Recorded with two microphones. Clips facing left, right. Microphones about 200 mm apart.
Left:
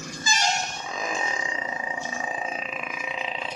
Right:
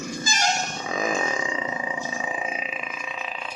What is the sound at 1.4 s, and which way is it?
Roar, 25° right (ahead or behind).